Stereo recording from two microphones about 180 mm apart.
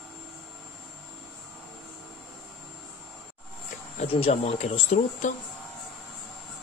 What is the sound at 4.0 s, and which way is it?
Speech, 35° left (ahead or behind).